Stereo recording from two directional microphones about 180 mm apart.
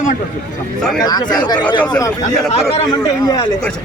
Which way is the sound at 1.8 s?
10° left (ahead or behind).